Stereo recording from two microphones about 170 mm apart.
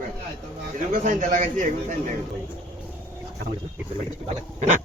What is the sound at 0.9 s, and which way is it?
A man's voice, 50° right (ahead or behind).